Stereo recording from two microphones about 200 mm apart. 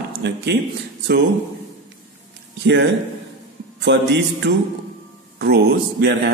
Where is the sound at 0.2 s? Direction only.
60° right (ahead or behind).